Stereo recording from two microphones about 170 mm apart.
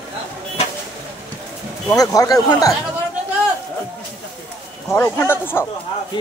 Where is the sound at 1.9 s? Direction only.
20° left (ahead or behind).